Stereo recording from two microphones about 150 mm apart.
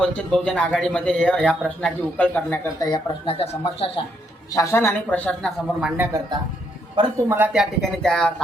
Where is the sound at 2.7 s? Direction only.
25° left (ahead or behind).